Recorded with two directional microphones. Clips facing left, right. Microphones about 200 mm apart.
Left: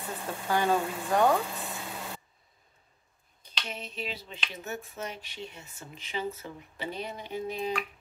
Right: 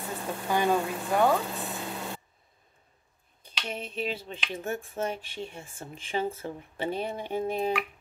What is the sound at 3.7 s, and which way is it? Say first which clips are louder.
Speech: right 6 dB; 50° right (ahead or behind).